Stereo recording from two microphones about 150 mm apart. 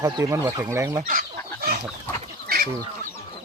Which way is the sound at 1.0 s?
70° right (ahead or behind).